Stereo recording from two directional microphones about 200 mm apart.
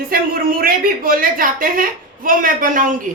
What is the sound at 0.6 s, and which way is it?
A woman's voice, 45° right (ahead or behind).